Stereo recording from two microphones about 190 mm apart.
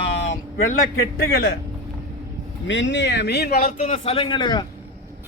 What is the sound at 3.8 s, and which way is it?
Speech, 30° left (ahead or behind).